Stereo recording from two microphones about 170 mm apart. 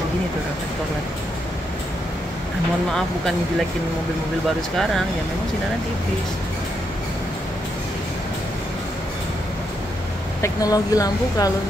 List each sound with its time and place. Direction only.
10.4 s speech: 20° left (ahead or behind)